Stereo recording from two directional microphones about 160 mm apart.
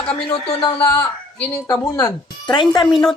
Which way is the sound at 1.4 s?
10° left (ahead or behind).